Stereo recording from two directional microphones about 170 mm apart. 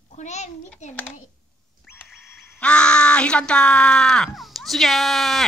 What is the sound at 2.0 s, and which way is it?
Speech, centre (ahead or behind).